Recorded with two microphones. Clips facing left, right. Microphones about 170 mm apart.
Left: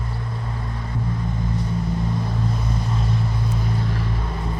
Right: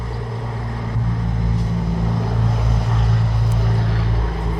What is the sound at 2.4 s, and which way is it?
Vehicle, 90° right.